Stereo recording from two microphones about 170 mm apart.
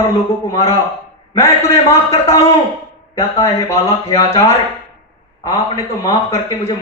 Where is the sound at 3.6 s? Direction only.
20° left (ahead or behind).